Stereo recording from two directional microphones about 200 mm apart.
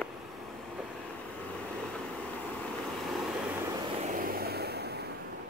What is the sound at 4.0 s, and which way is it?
Vehicle, 40° right (ahead or behind).